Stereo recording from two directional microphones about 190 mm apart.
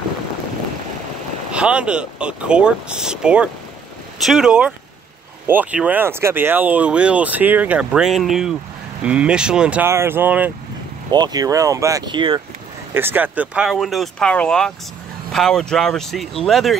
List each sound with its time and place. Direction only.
1.5 s speech: 5° right (ahead or behind)
11.1 s speech: 20° right (ahead or behind)
12.9 s speech: 10° right (ahead or behind)